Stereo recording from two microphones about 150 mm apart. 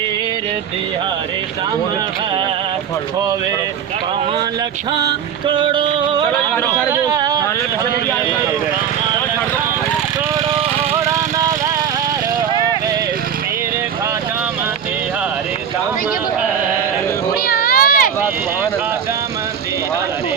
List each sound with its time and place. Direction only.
4.9 s music: 30° right (ahead or behind)
6.9 s vehicle: 25° right (ahead or behind)
17.4 s a sound: 90° left; by 18.1 s 70° left (ahead or behind)